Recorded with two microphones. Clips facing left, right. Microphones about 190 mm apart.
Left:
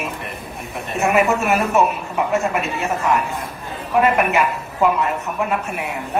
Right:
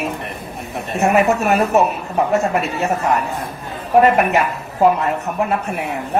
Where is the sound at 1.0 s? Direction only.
40° right (ahead or behind).